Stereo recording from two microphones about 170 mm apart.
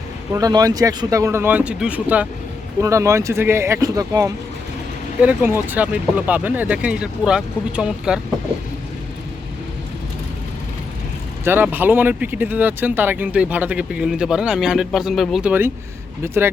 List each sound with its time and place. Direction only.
0.3 s speech: 20° right (ahead or behind); by 8.2 s 5° right (ahead or behind)
11.4 s speech: 10° right (ahead or behind)